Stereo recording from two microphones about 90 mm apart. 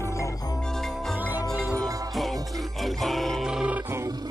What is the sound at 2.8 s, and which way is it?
Music, centre (ahead or behind).